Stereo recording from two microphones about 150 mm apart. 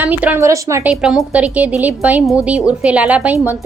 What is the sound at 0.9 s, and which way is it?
A woman's voice, 5° right (ahead or behind).